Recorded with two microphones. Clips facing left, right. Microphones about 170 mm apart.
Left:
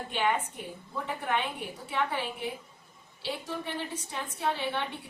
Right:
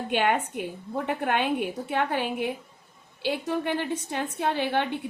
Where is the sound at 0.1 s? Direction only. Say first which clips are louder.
Right 5 dB; 65° right (ahead or behind).